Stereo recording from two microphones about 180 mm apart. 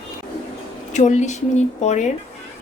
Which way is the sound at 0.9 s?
40° left (ahead or behind).